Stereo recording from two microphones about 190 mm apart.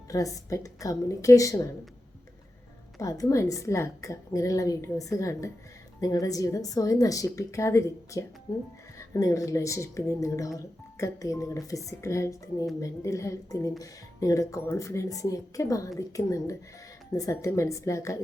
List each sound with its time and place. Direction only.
0.1 s speech: 15° left (ahead or behind)
3.0 s speech: 20° left (ahead or behind)